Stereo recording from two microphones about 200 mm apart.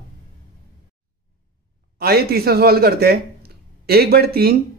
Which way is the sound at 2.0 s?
50° right (ahead or behind).